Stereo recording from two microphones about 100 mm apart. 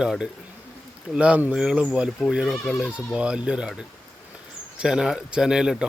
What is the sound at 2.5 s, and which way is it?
Speech, centre (ahead or behind).